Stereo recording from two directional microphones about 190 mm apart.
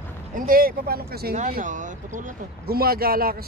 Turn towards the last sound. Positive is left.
turn(degrees=-50)  # may be behind; listen again after turning